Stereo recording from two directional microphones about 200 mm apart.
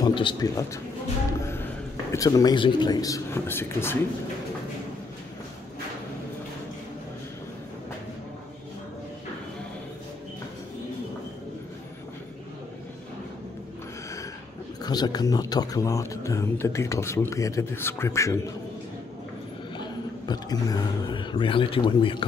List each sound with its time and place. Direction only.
0.0 s a man's voice: 25° left (ahead or behind)
1.4 s a sound: 10° left (ahead or behind)
2.1 s speech: 15° left (ahead or behind)
14.8 s speech: 20° left (ahead or behind)
19.8 s speech: 20° left (ahead or behind)